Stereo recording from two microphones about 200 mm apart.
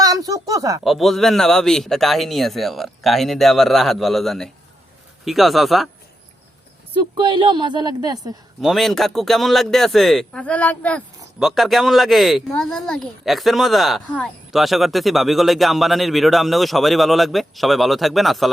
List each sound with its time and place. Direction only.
0.0 s a sound: 20° right (ahead or behind)
0.9 s speech: centre (ahead or behind)
7.2 s a woman's voice: 25° right (ahead or behind)
8.6 s speech: centre (ahead or behind)